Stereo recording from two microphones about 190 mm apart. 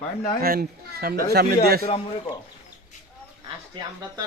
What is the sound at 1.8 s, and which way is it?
Speech, 25° left (ahead or behind).